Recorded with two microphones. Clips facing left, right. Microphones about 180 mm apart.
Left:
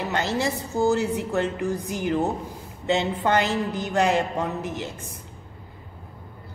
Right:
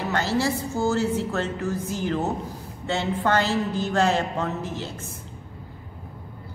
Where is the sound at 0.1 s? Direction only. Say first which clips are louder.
Right 3 dB; 20° left (ahead or behind).